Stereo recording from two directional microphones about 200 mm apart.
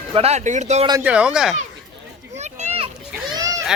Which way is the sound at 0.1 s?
30° right (ahead or behind).